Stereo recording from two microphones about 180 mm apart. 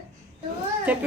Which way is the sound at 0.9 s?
10° right (ahead or behind).